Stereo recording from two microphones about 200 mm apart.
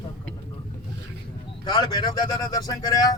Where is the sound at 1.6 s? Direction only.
20° left (ahead or behind).